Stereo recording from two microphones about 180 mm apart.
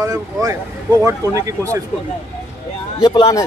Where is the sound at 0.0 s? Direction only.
20° right (ahead or behind).